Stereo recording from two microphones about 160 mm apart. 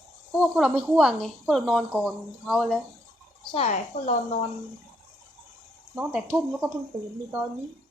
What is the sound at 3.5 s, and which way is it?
Speech, 40° left (ahead or behind).